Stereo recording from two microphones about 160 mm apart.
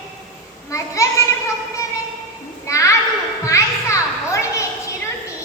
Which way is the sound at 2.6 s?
20° left (ahead or behind).